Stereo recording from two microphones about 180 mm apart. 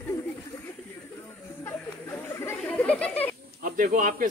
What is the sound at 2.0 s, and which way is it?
Chatter, 15° left (ahead or behind).